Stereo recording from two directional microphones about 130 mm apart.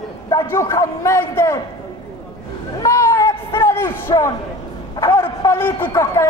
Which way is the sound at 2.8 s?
20° left (ahead or behind).